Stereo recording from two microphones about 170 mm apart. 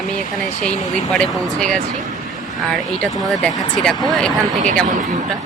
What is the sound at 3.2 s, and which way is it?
A woman's voice, centre (ahead or behind).